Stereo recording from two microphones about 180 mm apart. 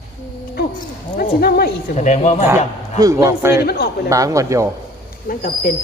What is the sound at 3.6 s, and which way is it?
Speech, 60° left (ahead or behind).